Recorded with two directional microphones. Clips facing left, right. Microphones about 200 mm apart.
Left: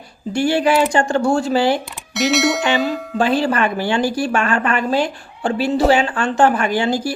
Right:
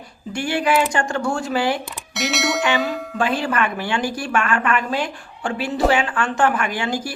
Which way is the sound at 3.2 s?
30° left (ahead or behind).